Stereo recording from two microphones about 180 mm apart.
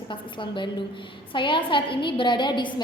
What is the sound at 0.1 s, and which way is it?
A woman's voice, 25° left (ahead or behind).